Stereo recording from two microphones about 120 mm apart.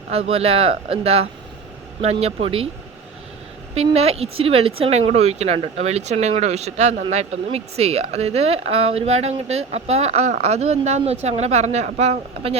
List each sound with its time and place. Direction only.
0.1 s speech: 60° right (ahead or behind)
3.8 s speech: 60° right (ahead or behind)